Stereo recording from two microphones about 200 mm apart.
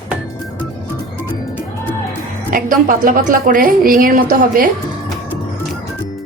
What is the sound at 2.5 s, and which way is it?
A woman's voice, 45° right (ahead or behind).